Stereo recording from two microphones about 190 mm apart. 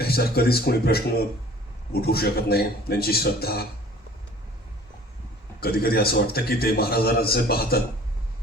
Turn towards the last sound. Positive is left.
turn(degrees=55)  # may be behind; listen again after turning